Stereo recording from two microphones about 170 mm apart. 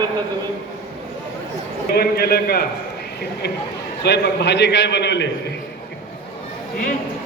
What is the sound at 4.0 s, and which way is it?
A man's voice, 90° left.